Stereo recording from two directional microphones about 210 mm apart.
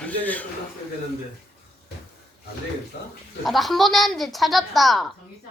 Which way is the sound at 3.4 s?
Centre (ahead or behind).